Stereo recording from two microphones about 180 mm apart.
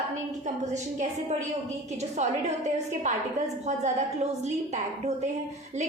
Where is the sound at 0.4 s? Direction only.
40° right (ahead or behind).